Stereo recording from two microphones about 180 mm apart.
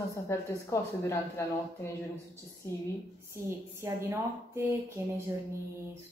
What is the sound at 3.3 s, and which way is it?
A woman's voice, 15° right (ahead or behind).